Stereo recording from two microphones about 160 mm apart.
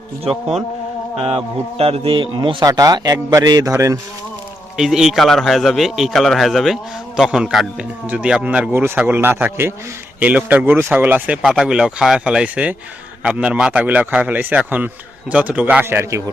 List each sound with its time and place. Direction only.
1.1 s a man's voice: 40° right (ahead or behind); by 3.9 s 20° right (ahead or behind)
4.8 s a man's voice: 5° right (ahead or behind)